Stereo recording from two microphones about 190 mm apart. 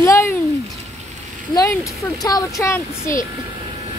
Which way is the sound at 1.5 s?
20° left (ahead or behind).